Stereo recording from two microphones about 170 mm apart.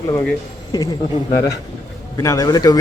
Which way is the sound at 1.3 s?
20° left (ahead or behind).